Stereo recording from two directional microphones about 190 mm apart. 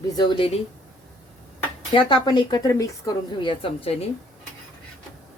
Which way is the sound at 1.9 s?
25° left (ahead or behind).